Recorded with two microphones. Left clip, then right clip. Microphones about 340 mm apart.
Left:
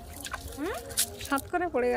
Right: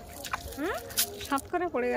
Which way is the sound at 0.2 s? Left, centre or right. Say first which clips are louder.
Right 2 dB; centre.